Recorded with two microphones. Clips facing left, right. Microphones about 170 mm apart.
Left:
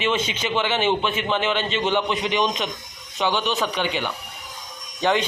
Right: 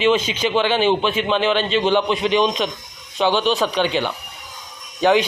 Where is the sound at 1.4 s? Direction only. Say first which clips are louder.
Right 5 dB; 20° left (ahead or behind).